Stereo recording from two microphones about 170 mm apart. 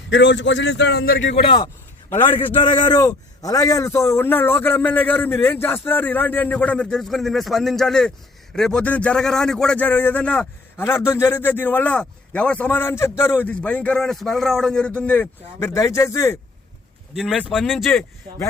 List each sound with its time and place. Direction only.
0.1 s a man's voice: 90° left
1.5 s a sound: 25° left (ahead or behind)
2.6 s a man's voice: 25° left (ahead or behind)
17.2 s a man's voice: 5° right (ahead or behind)